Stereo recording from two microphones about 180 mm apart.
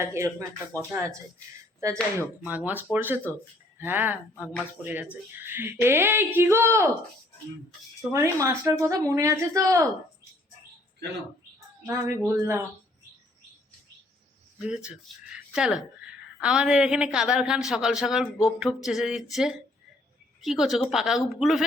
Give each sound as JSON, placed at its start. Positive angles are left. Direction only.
{"t": 0.0, "sound": "speech", "side_deg": -15}
{"t": 1.8, "sound": "speech", "side_deg": -15}
{"t": 8.1, "sound": "speech", "side_deg": -15}
{"t": 11.9, "sound": "speech", "side_deg": -15}
{"t": 14.6, "sound": "a woman's voice", "side_deg": -5}